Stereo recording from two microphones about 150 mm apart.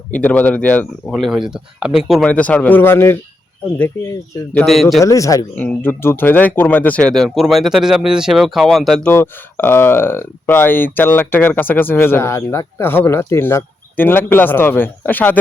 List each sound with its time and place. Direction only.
0.1 s speech: 10° left (ahead or behind)
4.5 s speech: centre (ahead or behind)
5.0 s speech: 20° left (ahead or behind)
5.5 s speech: 10° left (ahead or behind)
9.1 s speech: 15° left (ahead or behind)